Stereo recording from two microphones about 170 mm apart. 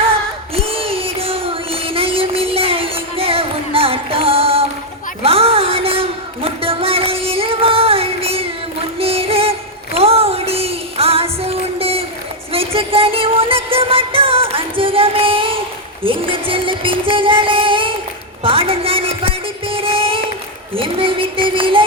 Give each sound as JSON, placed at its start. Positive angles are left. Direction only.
{"t": 0.5, "sound": "a sound", "side_deg": -35}
{"t": 12.5, "sound": "music", "side_deg": -35}
{"t": 20.7, "sound": "child singing", "side_deg": -30}